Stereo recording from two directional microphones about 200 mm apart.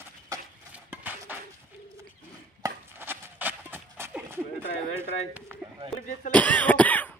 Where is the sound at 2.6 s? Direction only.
10° right (ahead or behind).